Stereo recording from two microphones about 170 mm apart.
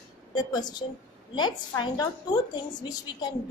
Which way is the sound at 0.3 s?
25° left (ahead or behind).